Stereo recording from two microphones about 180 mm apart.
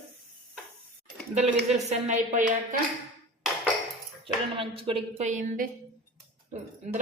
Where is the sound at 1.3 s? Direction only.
40° right (ahead or behind).